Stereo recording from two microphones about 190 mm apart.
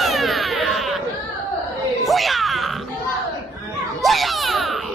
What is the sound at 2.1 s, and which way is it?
Music, centre (ahead or behind).